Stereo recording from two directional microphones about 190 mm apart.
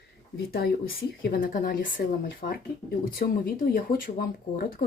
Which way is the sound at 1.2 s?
50° left (ahead or behind).